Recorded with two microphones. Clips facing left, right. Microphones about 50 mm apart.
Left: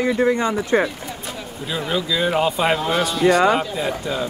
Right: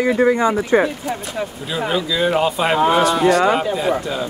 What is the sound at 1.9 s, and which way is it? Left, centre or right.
Speech, centre.